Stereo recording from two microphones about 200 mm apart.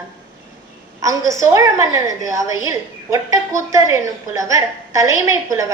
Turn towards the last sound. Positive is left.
turn(degrees=-15)  # may be behind; listen again after turning